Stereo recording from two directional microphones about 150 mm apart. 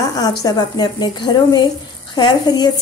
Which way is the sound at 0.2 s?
25° left (ahead or behind).